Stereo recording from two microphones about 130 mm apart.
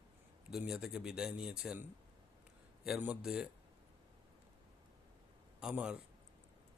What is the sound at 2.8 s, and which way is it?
Speech, 5° right (ahead or behind).